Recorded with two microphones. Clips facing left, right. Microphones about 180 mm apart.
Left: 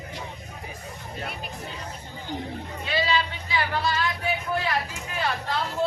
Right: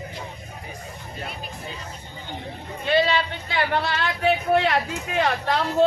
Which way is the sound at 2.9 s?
60° right (ahead or behind).